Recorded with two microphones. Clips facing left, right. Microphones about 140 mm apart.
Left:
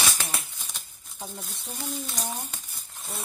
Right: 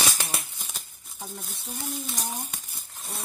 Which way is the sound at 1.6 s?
Centre (ahead or behind).